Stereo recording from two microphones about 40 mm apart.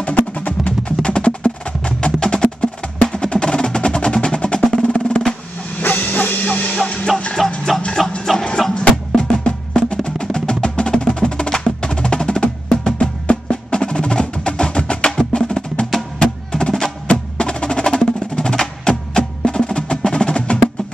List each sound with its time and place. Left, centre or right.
0.0 s music: left
1.0 s wood block: left
2.1 s music: left
3.1 s percussion: left
5.8 s dog: left
7.4 s music: centre
9.1 s music: left
13.3 s wood block: left
16.2 s music: centre
17.1 s percussion: left